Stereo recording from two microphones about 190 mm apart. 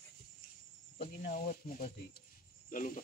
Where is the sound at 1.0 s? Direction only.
50° left (ahead or behind).